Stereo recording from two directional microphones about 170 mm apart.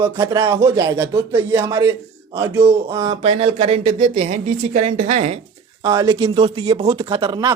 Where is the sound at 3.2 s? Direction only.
40° right (ahead or behind).